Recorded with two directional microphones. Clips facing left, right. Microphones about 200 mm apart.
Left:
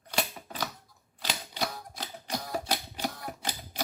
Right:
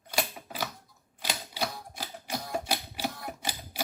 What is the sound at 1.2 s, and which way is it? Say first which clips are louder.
Typewriter: even; 10° right (ahead or behind).